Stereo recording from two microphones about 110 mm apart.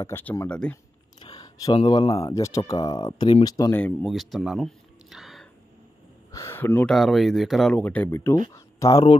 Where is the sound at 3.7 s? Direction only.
15° left (ahead or behind).